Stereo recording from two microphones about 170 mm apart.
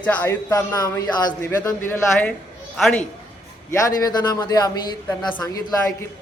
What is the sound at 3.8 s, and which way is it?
Speech, 20° left (ahead or behind).